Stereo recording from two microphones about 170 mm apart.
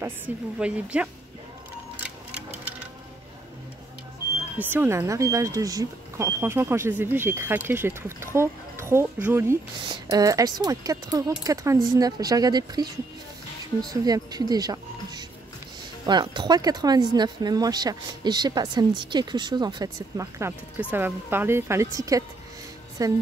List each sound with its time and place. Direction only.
0.6 s speech: 5° right (ahead or behind)
4.6 s speech: 10° right (ahead or behind)